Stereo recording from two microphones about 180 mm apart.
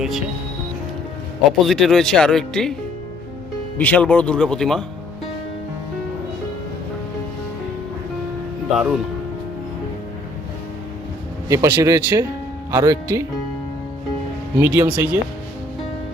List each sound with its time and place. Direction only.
1.5 s speech: centre (ahead or behind)
3.8 s speech: 10° left (ahead or behind)
8.7 s speech: 5° right (ahead or behind)
11.4 s speech: 15° right (ahead or behind)
14.6 s speech: 10° right (ahead or behind)